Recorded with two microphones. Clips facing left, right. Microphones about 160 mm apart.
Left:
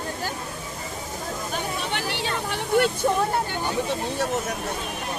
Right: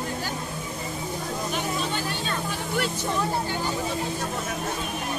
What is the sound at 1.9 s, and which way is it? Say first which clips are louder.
Vehicle: left 1 dB; 70° left (ahead or behind).